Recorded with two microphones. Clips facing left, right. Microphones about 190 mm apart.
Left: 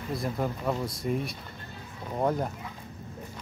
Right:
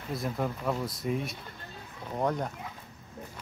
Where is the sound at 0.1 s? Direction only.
Centre (ahead or behind).